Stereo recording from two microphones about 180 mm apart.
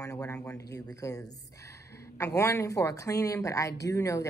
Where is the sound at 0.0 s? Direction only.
20° left (ahead or behind).